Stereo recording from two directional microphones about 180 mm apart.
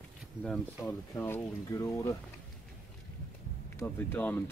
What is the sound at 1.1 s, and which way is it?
Speech, 15° left (ahead or behind).